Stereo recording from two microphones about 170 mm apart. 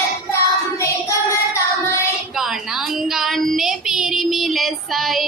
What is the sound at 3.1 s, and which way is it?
Child singing, centre (ahead or behind).